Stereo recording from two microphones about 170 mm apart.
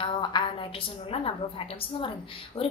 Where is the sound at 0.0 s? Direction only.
25° left (ahead or behind).